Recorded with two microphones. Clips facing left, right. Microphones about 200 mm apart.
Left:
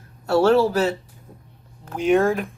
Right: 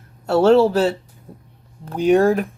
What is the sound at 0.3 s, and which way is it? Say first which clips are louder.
Speech: right 3 dB; 25° right (ahead or behind).